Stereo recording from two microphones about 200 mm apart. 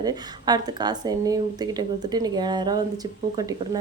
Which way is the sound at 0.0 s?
20° right (ahead or behind).